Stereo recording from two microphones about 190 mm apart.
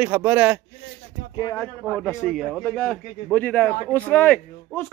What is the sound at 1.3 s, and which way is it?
Speech, 20° left (ahead or behind).